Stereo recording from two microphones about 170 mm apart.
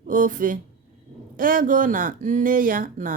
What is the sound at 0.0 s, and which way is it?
A woman's voice, 50° right (ahead or behind).